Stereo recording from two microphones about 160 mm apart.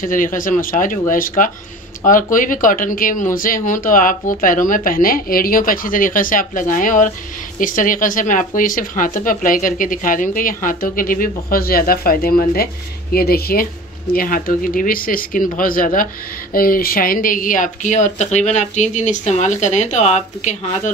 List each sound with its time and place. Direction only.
0.0 s speech: 55° left (ahead or behind)